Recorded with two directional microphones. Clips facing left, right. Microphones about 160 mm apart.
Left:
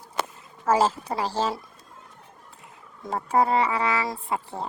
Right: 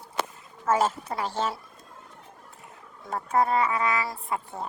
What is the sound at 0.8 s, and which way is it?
Speech, 35° left (ahead or behind).